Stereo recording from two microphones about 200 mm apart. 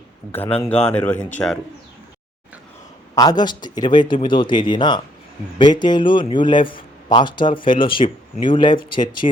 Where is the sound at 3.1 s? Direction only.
20° left (ahead or behind).